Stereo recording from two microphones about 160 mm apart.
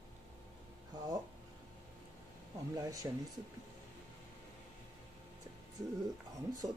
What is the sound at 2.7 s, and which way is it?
Speech, 20° right (ahead or behind).